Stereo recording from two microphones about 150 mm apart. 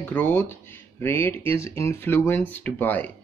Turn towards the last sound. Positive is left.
turn(degrees=10)  # may be behind; listen again after turning